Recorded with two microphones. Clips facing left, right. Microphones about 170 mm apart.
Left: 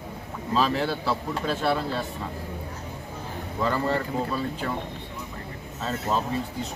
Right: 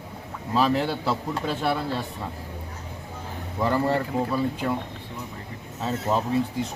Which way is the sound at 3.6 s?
15° right (ahead or behind).